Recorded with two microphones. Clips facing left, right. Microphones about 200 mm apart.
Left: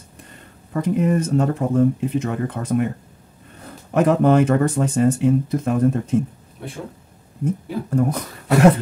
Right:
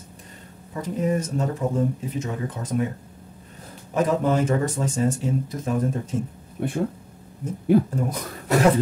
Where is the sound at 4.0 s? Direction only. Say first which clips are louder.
Left 6 dB; 65° left (ahead or behind).